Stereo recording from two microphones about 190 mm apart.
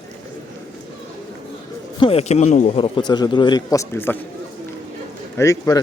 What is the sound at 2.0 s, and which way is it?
Speech, 30° left (ahead or behind).